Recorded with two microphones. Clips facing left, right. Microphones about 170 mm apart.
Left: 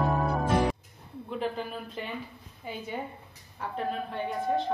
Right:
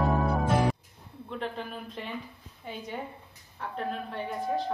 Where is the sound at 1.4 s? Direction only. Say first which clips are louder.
Left 3 dB; centre (ahead or behind).